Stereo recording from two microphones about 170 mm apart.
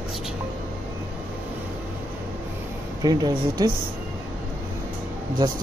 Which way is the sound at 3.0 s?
25° right (ahead or behind).